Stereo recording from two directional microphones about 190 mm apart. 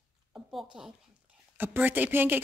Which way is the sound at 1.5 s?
10° right (ahead or behind).